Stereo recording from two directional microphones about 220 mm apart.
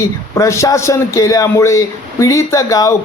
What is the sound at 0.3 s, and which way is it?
A man's voice, 15° left (ahead or behind).